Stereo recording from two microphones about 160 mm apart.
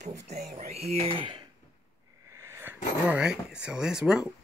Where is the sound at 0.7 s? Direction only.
40° right (ahead or behind).